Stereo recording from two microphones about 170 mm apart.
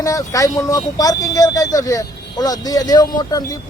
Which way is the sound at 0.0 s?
20° left (ahead or behind).